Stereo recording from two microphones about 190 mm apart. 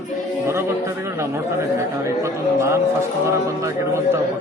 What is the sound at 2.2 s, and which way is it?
A man's voice, 15° right (ahead or behind).